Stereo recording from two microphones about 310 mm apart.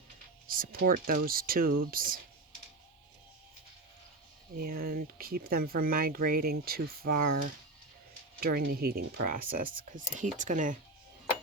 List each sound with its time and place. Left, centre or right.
0.4 s speech: right
4.5 s speech: right